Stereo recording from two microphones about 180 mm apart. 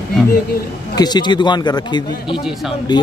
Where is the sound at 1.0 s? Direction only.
25° left (ahead or behind).